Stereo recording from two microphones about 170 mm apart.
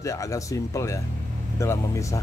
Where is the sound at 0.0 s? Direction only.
20° left (ahead or behind).